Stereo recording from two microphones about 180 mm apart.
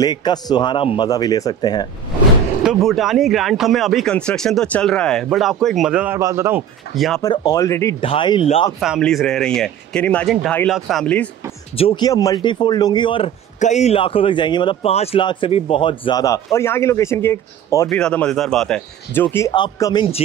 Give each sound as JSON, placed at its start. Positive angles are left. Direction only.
{"t": 0.0, "sound": "a man's voice", "side_deg": 25}
{"t": 2.6, "sound": "speech", "side_deg": 0}
{"t": 7.2, "sound": "speech", "side_deg": 20}
{"t": 8.0, "sound": "a man's voice", "side_deg": 30}
{"t": 8.7, "sound": "speech", "side_deg": 0}
{"t": 11.7, "sound": "a man's voice", "side_deg": 30}
{"t": 13.6, "sound": "a man's voice", "side_deg": 40}
{"t": 17.8, "sound": "speech", "side_deg": 5}
{"t": 19.3, "sound": "a man's voice", "side_deg": 20}